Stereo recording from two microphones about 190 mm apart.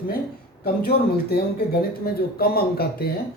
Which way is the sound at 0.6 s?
55° left (ahead or behind).